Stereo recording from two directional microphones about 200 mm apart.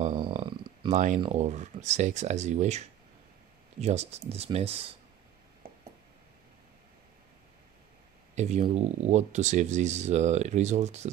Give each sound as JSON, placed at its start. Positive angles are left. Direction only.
{"t": 0.1, "sound": "a sound", "side_deg": -25}
{"t": 0.9, "sound": "speech", "side_deg": -40}
{"t": 8.4, "sound": "speech", "side_deg": -35}